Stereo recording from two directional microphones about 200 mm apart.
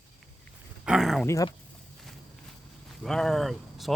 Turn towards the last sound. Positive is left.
turn(degrees=0)  # may be behind; listen again after turning